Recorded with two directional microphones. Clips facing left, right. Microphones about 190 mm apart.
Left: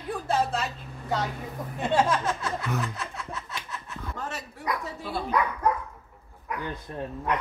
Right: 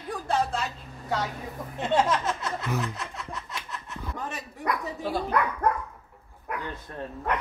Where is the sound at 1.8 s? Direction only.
20° right (ahead or behind).